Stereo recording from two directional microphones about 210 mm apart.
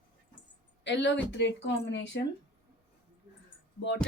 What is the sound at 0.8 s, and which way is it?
Speech, 55° left (ahead or behind).